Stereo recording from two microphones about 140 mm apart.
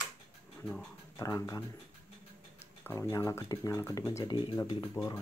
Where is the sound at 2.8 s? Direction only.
20° left (ahead or behind).